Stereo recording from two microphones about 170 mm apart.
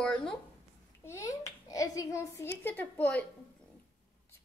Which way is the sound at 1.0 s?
15° left (ahead or behind).